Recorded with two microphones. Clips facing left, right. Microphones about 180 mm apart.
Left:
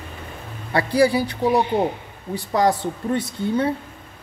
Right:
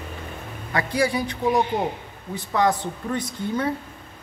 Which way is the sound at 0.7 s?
30° left (ahead or behind).